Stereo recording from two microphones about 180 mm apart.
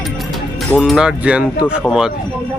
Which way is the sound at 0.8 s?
Centre (ahead or behind).